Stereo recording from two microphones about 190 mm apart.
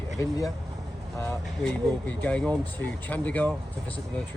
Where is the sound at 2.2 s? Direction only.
5° left (ahead or behind).